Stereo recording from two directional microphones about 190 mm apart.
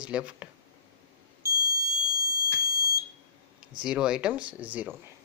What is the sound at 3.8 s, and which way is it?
Speech, 5° right (ahead or behind).